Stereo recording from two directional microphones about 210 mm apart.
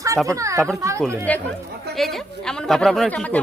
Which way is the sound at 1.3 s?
5° left (ahead or behind).